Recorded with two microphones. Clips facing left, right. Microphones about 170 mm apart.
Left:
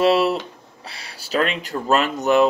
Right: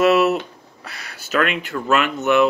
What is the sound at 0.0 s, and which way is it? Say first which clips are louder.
Speech: right 2 dB; 30° left (ahead or behind).